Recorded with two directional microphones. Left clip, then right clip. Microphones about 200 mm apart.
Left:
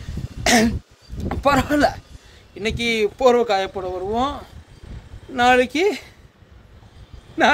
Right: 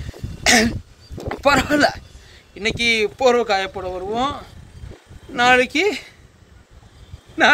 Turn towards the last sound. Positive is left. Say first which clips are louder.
# right 2 dB
turn(degrees=10)  # may be behind; listen again after turning